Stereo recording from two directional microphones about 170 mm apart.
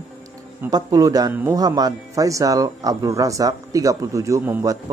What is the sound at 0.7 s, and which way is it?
Speech, 20° right (ahead or behind).